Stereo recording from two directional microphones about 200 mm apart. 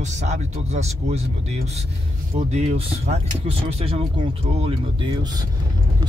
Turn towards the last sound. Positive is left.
turn(degrees=-20)  # may be behind; listen again after turning